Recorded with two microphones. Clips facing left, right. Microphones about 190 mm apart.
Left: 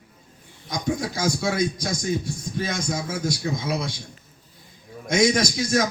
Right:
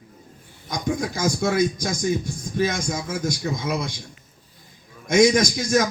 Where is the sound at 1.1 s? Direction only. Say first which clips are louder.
Right 2 dB; 50° right (ahead or behind).